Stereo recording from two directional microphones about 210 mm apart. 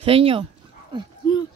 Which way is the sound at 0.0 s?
25° right (ahead or behind).